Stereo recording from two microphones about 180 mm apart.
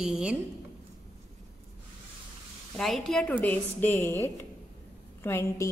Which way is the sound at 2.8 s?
Centre (ahead or behind).